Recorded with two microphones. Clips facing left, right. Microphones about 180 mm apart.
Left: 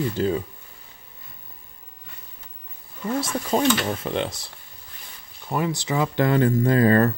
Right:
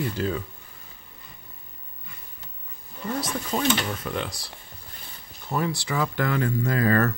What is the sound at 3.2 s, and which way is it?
Speech, 35° left (ahead or behind).